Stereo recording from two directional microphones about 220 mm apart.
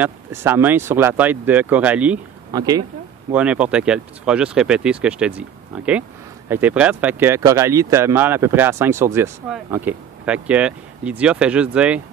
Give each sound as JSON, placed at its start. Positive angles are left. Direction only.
{"t": 0.0, "sound": "speech", "side_deg": -10}
{"t": 2.5, "sound": "speech", "side_deg": -15}
{"t": 3.3, "sound": "speech", "side_deg": -5}
{"t": 6.5, "sound": "speech", "side_deg": -5}